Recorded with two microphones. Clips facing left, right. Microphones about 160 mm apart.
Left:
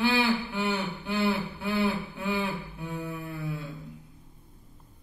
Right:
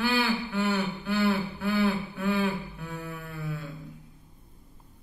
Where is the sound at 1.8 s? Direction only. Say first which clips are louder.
Right 1 dB; 10° left (ahead or behind).